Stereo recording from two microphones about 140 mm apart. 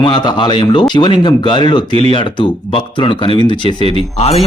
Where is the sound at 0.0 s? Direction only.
35° left (ahead or behind).